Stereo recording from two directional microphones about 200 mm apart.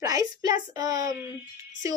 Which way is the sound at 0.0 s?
15° right (ahead or behind).